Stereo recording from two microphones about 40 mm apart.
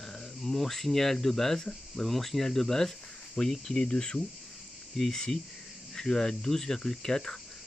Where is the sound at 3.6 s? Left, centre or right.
Left.